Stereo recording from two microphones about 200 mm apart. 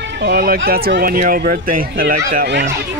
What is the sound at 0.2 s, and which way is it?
Speech, 50° right (ahead or behind).